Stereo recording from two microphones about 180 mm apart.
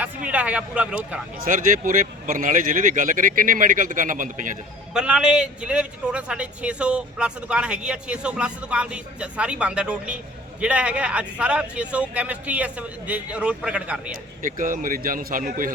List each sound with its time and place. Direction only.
0.3 s speech: 5° right (ahead or behind)
1.4 s speech: 50° right (ahead or behind)
4.9 s speech: 5° right (ahead or behind)
14.4 s speech: 50° right (ahead or behind)